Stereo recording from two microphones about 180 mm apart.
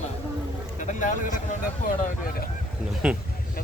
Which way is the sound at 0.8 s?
45° left (ahead or behind).